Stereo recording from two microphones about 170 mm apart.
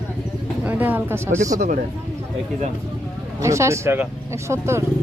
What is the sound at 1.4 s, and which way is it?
Speech, 45° right (ahead or behind).